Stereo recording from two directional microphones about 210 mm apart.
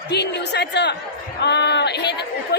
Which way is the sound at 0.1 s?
55° left (ahead or behind).